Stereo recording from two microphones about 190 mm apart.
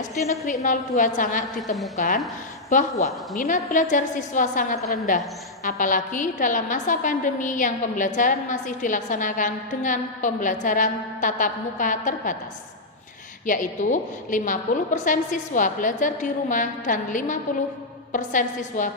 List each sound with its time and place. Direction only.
0.6 s a woman's voice: 45° left (ahead or behind)
13.4 s a woman's voice: 45° left (ahead or behind)